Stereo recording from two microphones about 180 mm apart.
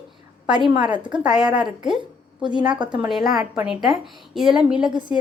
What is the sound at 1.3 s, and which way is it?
Speech, 5° right (ahead or behind).